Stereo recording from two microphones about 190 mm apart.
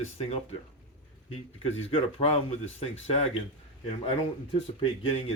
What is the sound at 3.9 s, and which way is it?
Speech, 30° left (ahead or behind).